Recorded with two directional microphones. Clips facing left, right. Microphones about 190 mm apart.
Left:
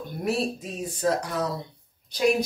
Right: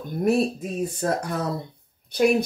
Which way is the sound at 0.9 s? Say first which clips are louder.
Left 5 dB; 55° right (ahead or behind).